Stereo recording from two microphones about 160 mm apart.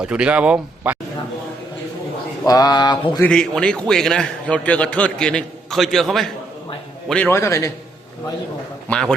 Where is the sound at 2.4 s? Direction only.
25° left (ahead or behind).